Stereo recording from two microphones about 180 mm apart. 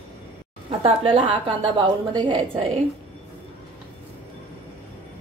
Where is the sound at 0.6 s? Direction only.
30° right (ahead or behind).